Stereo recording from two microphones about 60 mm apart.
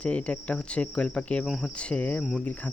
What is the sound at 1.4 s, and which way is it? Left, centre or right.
Speech, centre.